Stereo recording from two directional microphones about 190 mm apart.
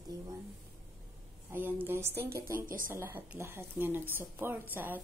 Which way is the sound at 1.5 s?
10° right (ahead or behind).